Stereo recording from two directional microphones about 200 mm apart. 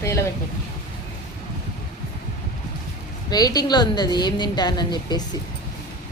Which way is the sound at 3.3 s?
20° left (ahead or behind).